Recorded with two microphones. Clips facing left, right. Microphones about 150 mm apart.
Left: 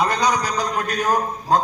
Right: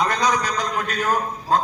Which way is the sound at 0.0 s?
10° left (ahead or behind).